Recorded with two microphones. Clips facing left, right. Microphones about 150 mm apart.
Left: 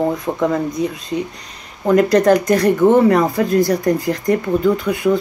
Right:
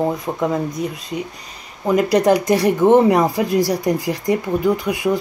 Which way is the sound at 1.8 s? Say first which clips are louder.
Left 3 dB; 5° right (ahead or behind).